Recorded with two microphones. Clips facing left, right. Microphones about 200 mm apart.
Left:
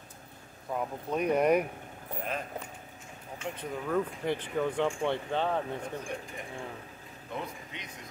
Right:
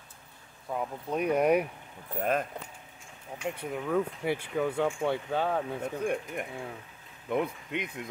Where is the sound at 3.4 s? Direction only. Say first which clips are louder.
Right 3 dB; 10° right (ahead or behind).